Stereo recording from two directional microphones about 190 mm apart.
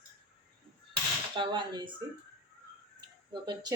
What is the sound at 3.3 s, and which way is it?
Speech, 20° right (ahead or behind).